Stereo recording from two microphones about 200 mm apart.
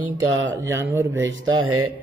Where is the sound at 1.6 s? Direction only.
90° right.